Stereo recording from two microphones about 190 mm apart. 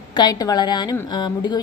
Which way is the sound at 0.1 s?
20° left (ahead or behind).